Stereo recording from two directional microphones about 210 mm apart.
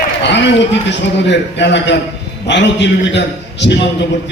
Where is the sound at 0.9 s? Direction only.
55° left (ahead or behind).